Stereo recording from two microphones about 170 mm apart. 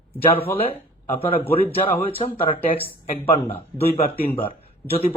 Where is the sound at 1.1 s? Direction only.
30° left (ahead or behind).